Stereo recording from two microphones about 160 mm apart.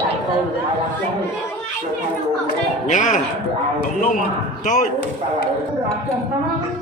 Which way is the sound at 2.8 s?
50° left (ahead or behind).